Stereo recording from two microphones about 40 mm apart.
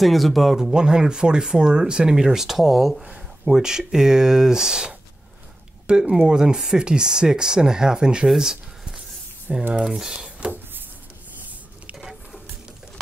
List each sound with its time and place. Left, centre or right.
0.0 s speech: centre
0.6 s speech: centre
9.5 s speech: centre